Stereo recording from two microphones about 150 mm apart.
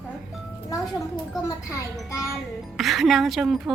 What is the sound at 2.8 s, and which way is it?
Speech, centre (ahead or behind).